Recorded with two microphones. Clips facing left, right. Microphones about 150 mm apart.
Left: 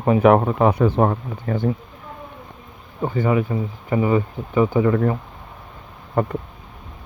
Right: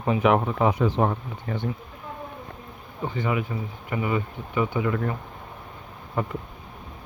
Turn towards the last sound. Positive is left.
turn(degrees=55)  # may be behind; listen again after turning